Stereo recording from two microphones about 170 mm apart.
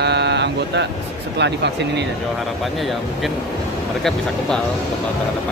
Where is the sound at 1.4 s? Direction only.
90° right.